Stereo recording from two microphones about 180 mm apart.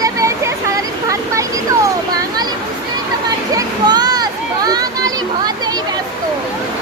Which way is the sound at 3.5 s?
20° right (ahead or behind).